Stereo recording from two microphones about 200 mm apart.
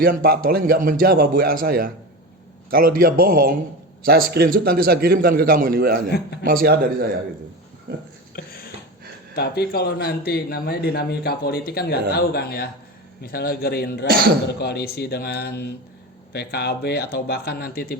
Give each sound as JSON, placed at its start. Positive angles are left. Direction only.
{"t": 0.0, "sound": "a man's voice", "side_deg": -45}
{"t": 8.4, "sound": "a sound", "side_deg": 50}
{"t": 9.3, "sound": "speech", "side_deg": 55}